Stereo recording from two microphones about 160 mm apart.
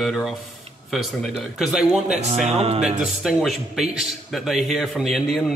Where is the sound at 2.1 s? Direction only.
45° right (ahead or behind).